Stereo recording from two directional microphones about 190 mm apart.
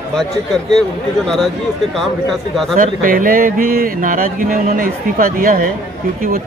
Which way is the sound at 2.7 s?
45° right (ahead or behind).